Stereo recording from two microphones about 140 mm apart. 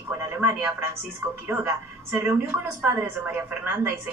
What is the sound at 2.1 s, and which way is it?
A woman's voice, 15° right (ahead or behind).